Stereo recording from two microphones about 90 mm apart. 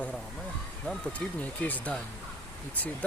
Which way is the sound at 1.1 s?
15° left (ahead or behind).